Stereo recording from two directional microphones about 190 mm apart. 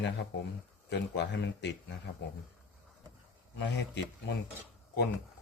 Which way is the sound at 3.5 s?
65° left (ahead or behind).